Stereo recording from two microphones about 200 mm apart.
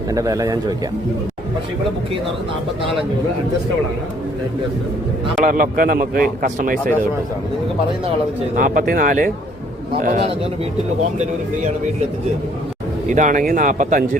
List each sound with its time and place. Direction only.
0.1 s speech: 15° right (ahead or behind)
5.4 s a man's voice: 45° right (ahead or behind)
8.5 s a man's voice: 45° right (ahead or behind)
11.2 s speech: 35° right (ahead or behind)
13.1 s speech: 40° right (ahead or behind)